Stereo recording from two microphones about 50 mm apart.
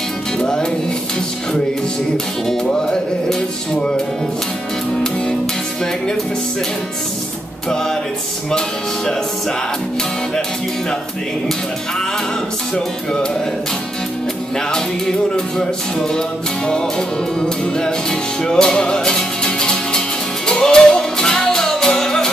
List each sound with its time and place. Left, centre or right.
0.4 s music: centre
2.4 s music: centre
8.5 s music: centre
12.7 s music: centre
14.7 s music: centre
17.4 s music: centre